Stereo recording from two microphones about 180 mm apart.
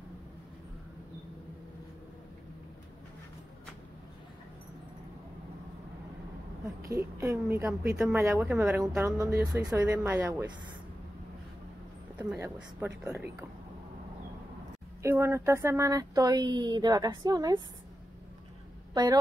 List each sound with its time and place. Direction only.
6.9 s a woman's voice: 15° right (ahead or behind)
12.2 s a woman's voice: 10° right (ahead or behind)
15.0 s speech: 15° right (ahead or behind)